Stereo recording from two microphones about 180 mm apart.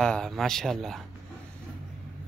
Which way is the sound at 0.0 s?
5° left (ahead or behind).